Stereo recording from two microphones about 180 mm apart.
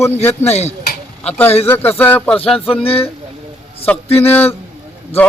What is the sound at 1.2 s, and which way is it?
Speech, 10° left (ahead or behind).